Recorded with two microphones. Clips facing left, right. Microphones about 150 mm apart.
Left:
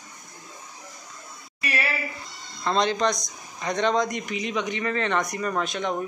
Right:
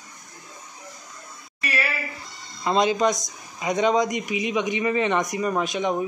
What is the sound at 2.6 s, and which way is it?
Speech, 10° right (ahead or behind).